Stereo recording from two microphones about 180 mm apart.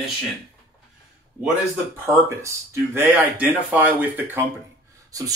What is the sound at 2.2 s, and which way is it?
Speech, 15° right (ahead or behind).